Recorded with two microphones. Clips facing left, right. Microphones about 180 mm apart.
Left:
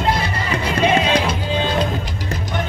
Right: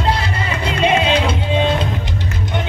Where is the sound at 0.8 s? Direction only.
25° right (ahead or behind).